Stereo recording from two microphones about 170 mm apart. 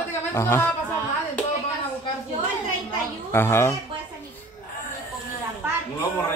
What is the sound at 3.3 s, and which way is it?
Speech, 15° left (ahead or behind).